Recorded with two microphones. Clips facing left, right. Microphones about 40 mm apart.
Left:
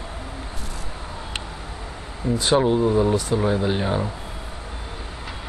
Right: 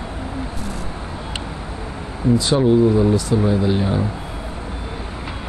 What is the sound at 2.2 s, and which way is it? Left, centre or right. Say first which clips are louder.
Speech: right 7 dB; centre.